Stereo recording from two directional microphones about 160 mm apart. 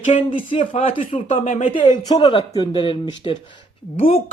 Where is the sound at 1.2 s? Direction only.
50° left (ahead or behind).